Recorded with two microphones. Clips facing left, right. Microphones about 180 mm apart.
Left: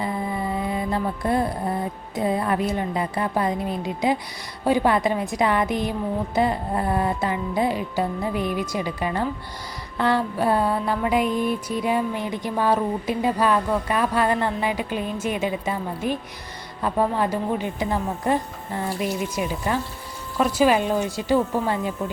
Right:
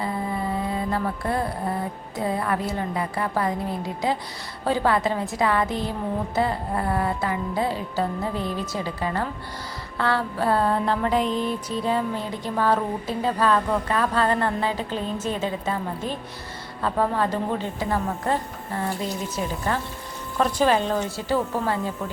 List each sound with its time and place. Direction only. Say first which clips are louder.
0.0 s a sound: left 1 dB; 15° left (ahead or behind)
2.1 s a woman's voice: left 3 dB; 20° left (ahead or behind)
4.6 s music: left 2 dB; 15° left (ahead or behind)